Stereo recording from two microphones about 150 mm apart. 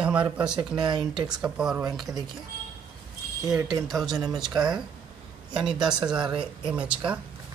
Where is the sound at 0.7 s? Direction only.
30° right (ahead or behind).